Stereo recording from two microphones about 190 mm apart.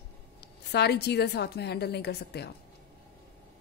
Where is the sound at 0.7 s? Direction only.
60° left (ahead or behind).